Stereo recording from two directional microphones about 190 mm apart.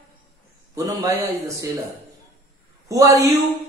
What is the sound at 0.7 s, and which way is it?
Speech, 20° right (ahead or behind).